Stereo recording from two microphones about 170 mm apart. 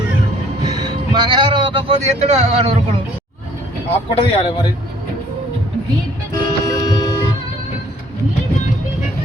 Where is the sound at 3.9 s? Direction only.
35° left (ahead or behind).